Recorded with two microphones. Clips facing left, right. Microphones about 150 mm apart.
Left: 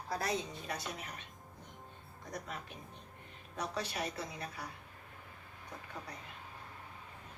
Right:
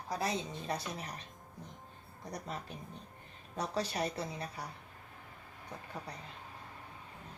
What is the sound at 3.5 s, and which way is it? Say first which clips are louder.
Speech: right 3 dB; 35° right (ahead or behind).